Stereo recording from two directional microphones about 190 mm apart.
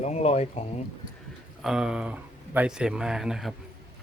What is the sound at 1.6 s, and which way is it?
Speech, 5° right (ahead or behind).